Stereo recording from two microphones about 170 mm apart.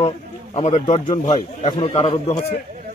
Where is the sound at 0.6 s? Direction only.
40° left (ahead or behind).